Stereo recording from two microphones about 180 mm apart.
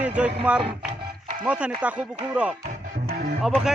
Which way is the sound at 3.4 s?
5° right (ahead or behind).